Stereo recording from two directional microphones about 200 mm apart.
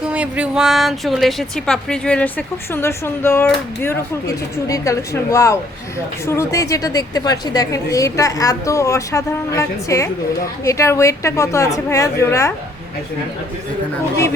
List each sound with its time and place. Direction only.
0.0 s a woman's voice: 5° right (ahead or behind); by 12.5 s 15° left (ahead or behind)